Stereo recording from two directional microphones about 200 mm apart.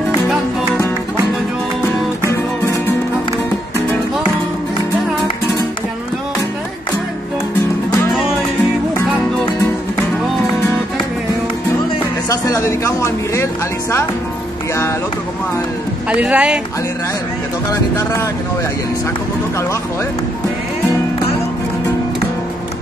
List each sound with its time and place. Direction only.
12.3 s speech: 15° left (ahead or behind)
16.1 s speech: 5° right (ahead or behind)
17.6 s speech: 15° left (ahead or behind)